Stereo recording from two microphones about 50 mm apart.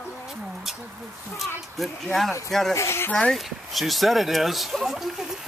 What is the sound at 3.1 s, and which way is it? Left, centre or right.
Speech, centre.